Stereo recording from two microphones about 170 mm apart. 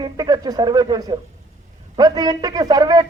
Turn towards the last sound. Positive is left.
turn(degrees=-25)  # may be behind; listen again after turning